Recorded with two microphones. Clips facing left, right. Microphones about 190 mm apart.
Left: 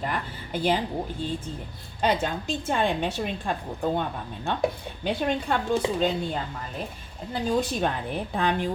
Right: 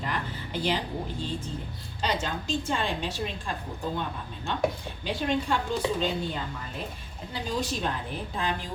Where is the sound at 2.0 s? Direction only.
55° left (ahead or behind).